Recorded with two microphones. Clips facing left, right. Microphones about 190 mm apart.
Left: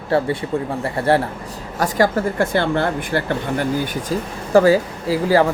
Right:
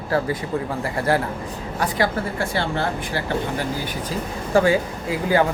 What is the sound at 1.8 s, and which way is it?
Speech, 50° left (ahead or behind).